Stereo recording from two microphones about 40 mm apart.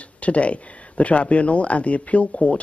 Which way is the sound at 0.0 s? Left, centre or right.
Left.